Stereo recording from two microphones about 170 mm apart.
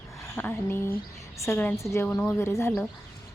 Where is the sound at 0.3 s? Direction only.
10° left (ahead or behind).